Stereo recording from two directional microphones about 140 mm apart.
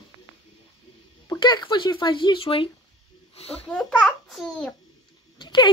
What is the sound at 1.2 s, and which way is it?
Speech, 35° left (ahead or behind).